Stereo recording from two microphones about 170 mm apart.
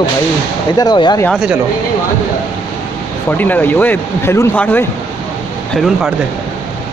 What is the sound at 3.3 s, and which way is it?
Speech, 10° left (ahead or behind).